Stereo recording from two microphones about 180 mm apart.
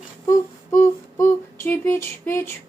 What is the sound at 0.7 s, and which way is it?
Female singing, 15° left (ahead or behind).